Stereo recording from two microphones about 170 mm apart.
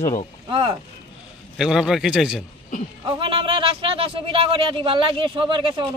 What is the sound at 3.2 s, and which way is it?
Speech, 30° right (ahead or behind).